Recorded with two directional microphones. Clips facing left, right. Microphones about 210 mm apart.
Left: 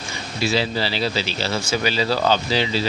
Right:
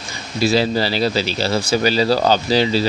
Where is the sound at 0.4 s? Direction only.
40° right (ahead or behind).